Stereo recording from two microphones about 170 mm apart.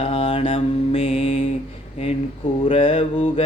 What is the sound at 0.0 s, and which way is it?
Mantra, 35° left (ahead or behind).